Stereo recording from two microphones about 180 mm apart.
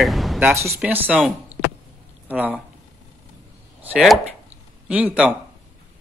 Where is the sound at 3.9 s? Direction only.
Centre (ahead or behind).